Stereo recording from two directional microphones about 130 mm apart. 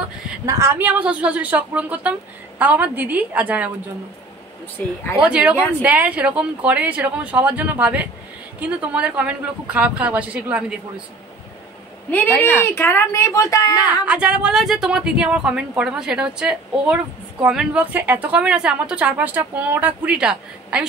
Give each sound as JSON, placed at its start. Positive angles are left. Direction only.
{"t": 0.5, "sound": "speech", "side_deg": -20}
{"t": 4.8, "sound": "speech", "side_deg": 15}
{"t": 5.2, "sound": "speech", "side_deg": -10}
{"t": 12.1, "sound": "speech", "side_deg": 15}
{"t": 14.0, "sound": "speech", "side_deg": -10}